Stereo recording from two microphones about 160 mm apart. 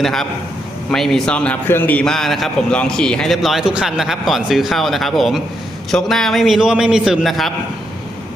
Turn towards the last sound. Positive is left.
turn(degrees=0)  # may be behind; listen again after turning